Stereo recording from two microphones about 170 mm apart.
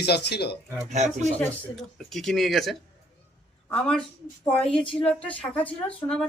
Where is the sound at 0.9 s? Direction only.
45° right (ahead or behind).